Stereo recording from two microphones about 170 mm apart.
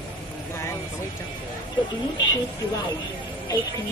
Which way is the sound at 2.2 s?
25° left (ahead or behind).